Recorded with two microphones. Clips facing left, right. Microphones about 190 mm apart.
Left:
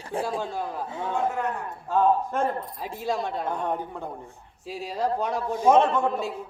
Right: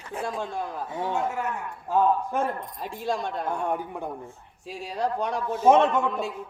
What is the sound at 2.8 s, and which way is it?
Speech, centre (ahead or behind).